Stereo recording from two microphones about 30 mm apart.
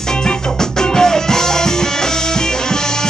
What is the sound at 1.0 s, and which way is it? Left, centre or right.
Music, centre.